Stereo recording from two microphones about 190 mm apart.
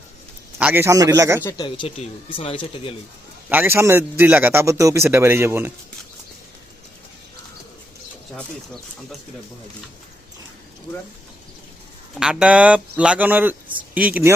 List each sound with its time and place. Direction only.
0.6 s a man's voice: 10° right (ahead or behind)
1.5 s speech: 25° left (ahead or behind)
3.5 s a man's voice: 10° right (ahead or behind)
12.1 s a man's voice: 5° right (ahead or behind)